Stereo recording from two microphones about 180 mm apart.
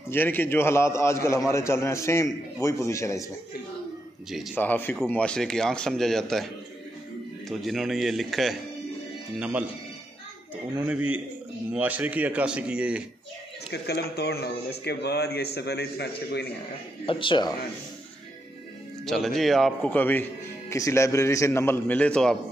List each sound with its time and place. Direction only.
0.1 s a man's voice: 10° left (ahead or behind)
4.6 s a man's voice: 10° left (ahead or behind); by 9.7 s 5° right (ahead or behind)
11.7 s speech: 10° right (ahead or behind)
13.7 s a man's voice: 65° left (ahead or behind)
17.0 s speech: 30° left (ahead or behind)
19.0 s a man's voice: centre (ahead or behind)